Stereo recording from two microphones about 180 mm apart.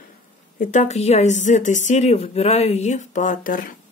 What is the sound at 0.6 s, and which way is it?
A woman's voice, 45° left (ahead or behind).